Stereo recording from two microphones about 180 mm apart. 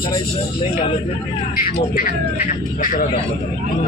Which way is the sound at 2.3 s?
45° left (ahead or behind).